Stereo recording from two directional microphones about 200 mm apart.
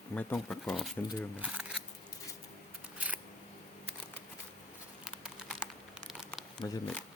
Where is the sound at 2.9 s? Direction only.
5° right (ahead or behind).